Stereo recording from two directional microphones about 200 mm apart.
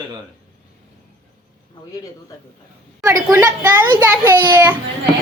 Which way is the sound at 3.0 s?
15° right (ahead or behind).